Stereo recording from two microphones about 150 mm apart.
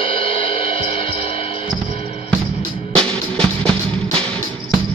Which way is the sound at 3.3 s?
5° left (ahead or behind).